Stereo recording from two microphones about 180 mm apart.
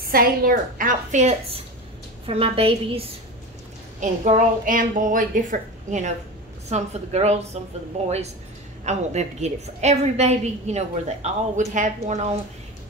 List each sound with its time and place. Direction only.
0.1 s a woman's voice: 55° right (ahead or behind)